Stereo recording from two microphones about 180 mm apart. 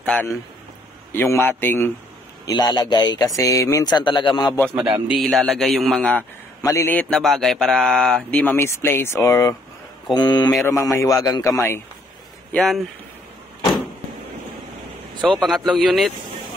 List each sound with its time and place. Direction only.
0.0 s a man's voice: 10° left (ahead or behind); by 4.6 s 25° left (ahead or behind)
5.0 s a man's voice: centre (ahead or behind); by 11.8 s 15° left (ahead or behind)
15.2 s a man's voice: centre (ahead or behind)